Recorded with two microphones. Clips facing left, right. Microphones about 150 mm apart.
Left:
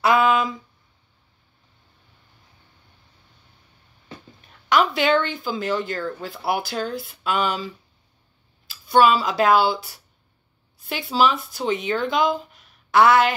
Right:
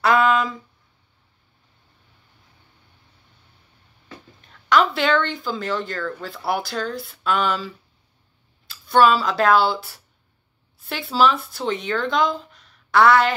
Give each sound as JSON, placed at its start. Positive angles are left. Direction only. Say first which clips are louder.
{"t": 0.0, "sound": "a sound", "louder": "even", "side_deg": 5}
{"t": 4.6, "sound": "a sound", "louder": "right 1 dB", "side_deg": 0}
{"t": 5.2, "sound": "speech", "louder": "even", "side_deg": 5}
{"t": 5.9, "sound": "speech", "louder": "even", "side_deg": 20}
{"t": 6.3, "sound": "speech", "louder": "even", "side_deg": 5}
{"t": 8.9, "sound": "speech", "louder": "even", "side_deg": 0}